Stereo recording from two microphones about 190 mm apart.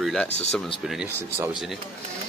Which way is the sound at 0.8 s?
Centre (ahead or behind).